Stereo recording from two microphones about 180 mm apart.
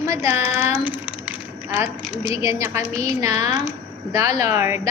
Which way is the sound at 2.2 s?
15° right (ahead or behind).